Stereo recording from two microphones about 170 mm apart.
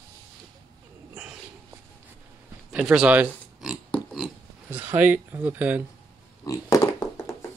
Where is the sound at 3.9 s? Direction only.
5° left (ahead or behind).